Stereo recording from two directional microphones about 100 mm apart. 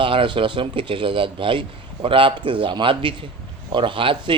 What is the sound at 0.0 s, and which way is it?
Speech, 60° right (ahead or behind).